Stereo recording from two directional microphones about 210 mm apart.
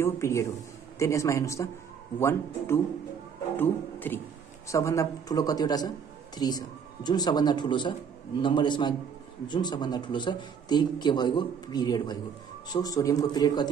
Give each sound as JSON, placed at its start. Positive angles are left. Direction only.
{"t": 0.0, "sound": "a man's voice", "side_deg": 15}